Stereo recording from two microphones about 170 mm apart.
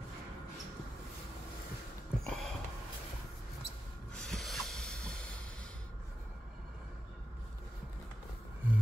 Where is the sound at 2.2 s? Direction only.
5° left (ahead or behind).